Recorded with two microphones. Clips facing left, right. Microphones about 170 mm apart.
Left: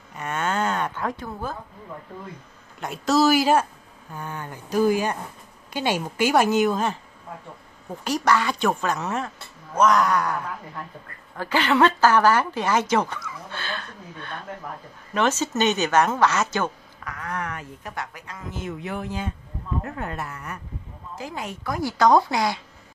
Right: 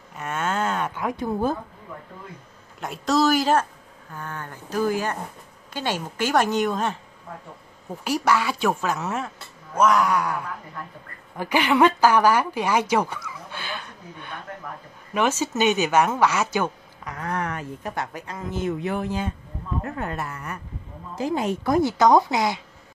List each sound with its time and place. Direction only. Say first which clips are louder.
0.1 s a sound: even; centre (ahead or behind)
2.8 s a woman's voice: left 1 dB; centre (ahead or behind)
8.0 s speech: even; 10° right (ahead or behind)
17.1 s a woman's voice: right 3 dB; 30° right (ahead or behind)
21.2 s a woman's voice: right 9 dB; 25° right (ahead or behind)